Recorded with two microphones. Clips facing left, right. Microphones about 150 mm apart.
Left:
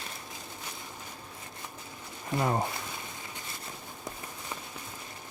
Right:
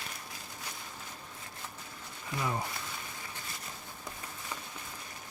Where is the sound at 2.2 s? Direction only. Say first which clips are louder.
Left 6 dB; 50° left (ahead or behind).